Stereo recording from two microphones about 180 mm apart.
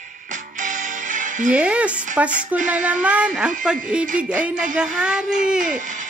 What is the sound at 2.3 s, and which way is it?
Speech, 45° right (ahead or behind).